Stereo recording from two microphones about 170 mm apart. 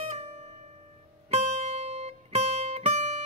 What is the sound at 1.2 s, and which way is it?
Music, 40° right (ahead or behind).